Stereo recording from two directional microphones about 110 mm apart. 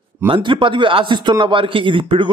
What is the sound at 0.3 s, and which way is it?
A man's voice, 50° right (ahead or behind).